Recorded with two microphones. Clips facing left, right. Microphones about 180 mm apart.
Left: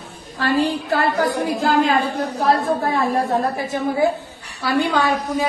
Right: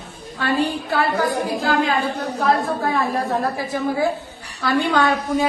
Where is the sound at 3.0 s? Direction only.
20° left (ahead or behind).